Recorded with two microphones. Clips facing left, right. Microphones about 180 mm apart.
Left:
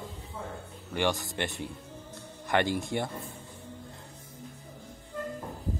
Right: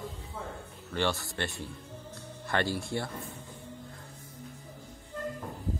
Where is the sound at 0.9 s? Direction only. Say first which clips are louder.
Left 2 dB; 15° left (ahead or behind).